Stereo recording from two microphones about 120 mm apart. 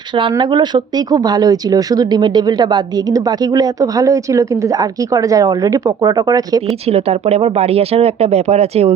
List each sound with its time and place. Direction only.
0.1 s speech: 45° right (ahead or behind)
6.8 s speech: 60° right (ahead or behind)